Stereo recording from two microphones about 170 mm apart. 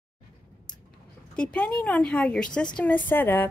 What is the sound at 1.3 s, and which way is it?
A woman's voice, 5° left (ahead or behind).